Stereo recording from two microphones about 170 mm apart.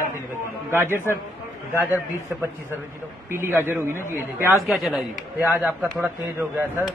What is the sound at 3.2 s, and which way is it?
Speech, 15° right (ahead or behind).